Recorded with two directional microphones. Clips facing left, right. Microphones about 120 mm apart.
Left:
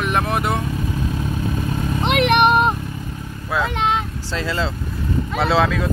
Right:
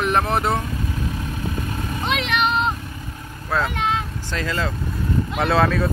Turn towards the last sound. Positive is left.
turn(degrees=0)  # may be behind; listen again after turning